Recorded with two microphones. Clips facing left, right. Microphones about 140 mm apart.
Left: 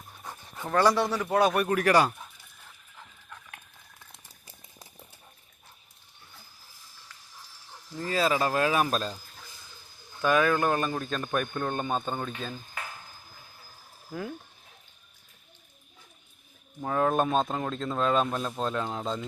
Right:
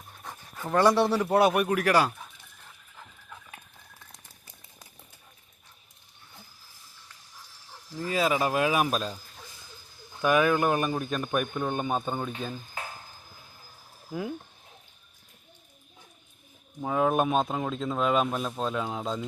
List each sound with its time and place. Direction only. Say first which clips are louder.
0.1 s pant: even; 5° left (ahead or behind)
0.7 s speech: right 2 dB; 20° right (ahead or behind)
1.0 s a man's voice: right 4 dB; 10° right (ahead or behind)
1.3 s speech: right 1 dB; 25° right (ahead or behind)
1.5 s speech: left 1 dB; 5° right (ahead or behind)
3.2 s chicken: right 1 dB; 5° right (ahead or behind)
7.9 s a man's voice: even; 10° right (ahead or behind)
10.2 s a man's voice: right 1 dB; 15° right (ahead or behind)
14.1 s a man's voice: right 3 dB; 15° right (ahead or behind)
16.8 s a man's voice: right 1 dB; 10° right (ahead or behind)